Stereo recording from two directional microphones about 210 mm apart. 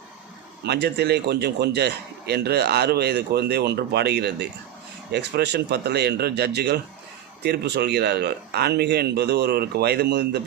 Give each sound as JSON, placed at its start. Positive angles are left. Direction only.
{"t": 0.6, "sound": "a man's voice", "side_deg": -50}